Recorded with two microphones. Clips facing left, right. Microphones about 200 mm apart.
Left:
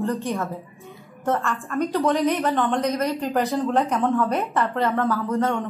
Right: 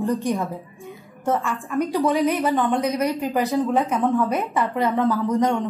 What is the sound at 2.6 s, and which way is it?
Speech, 15° right (ahead or behind).